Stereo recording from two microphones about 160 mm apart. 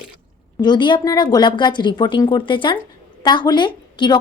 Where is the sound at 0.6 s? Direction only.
30° left (ahead or behind).